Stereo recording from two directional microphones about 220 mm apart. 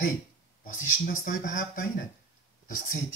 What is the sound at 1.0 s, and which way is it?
Speech, 40° left (ahead or behind).